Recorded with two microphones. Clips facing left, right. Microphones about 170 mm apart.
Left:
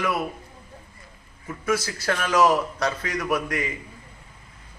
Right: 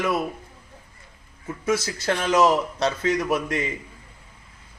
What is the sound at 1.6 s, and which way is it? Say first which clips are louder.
A man's voice: right 1 dB; 20° right (ahead or behind).